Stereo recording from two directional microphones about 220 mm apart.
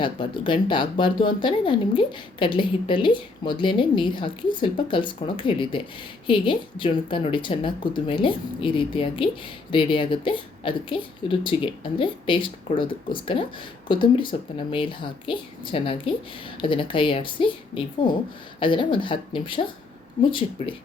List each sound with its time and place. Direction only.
0.0 s speech: 20° left (ahead or behind)